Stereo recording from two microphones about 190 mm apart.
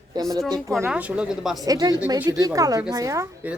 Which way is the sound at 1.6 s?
20° right (ahead or behind).